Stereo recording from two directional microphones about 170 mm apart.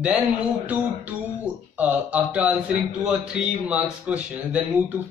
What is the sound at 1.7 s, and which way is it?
Speech, 10° right (ahead or behind).